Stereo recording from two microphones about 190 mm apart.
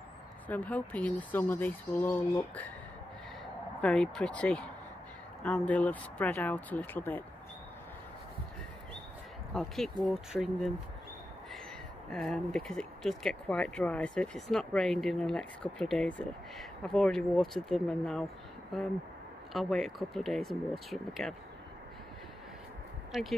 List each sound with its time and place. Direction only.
0.5 s speech: 5° left (ahead or behind)
3.8 s speech: 5° left (ahead or behind)
9.5 s speech: centre (ahead or behind)
12.1 s speech: centre (ahead or behind)
19.5 s speech: centre (ahead or behind)
23.1 s speech: centre (ahead or behind)